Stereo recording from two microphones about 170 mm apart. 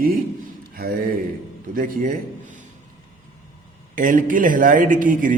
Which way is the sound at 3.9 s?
50° right (ahead or behind).